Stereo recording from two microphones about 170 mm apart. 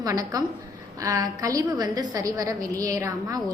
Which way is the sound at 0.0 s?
20° right (ahead or behind).